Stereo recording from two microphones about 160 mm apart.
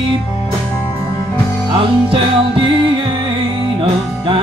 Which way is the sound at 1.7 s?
35° right (ahead or behind).